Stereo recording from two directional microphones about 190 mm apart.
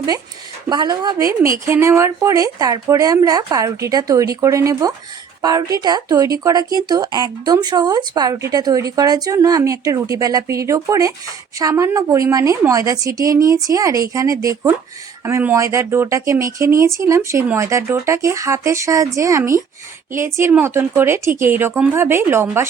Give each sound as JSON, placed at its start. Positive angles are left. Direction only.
{"t": 0.7, "sound": "speech", "side_deg": -20}